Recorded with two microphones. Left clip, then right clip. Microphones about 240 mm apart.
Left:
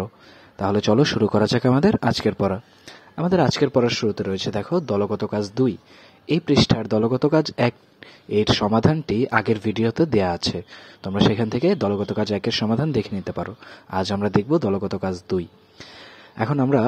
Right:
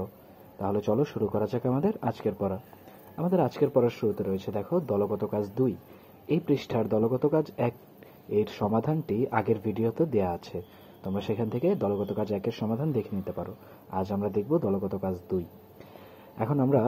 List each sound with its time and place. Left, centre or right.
0.6 s speech: left
16.3 s speech: left